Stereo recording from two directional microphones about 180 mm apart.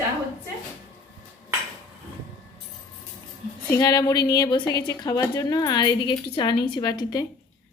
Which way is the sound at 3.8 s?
20° left (ahead or behind).